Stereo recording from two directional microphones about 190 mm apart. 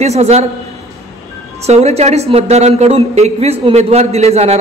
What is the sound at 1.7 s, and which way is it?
A woman's voice, 35° right (ahead or behind).